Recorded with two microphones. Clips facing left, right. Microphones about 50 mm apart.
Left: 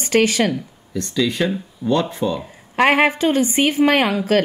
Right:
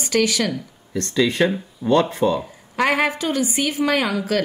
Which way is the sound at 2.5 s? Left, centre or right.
Left.